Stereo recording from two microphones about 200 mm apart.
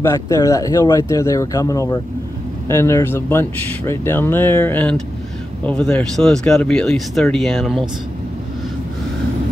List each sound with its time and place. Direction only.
0.0 s speech: 15° left (ahead or behind)